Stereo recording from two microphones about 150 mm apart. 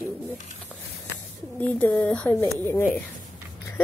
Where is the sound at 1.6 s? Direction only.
10° left (ahead or behind).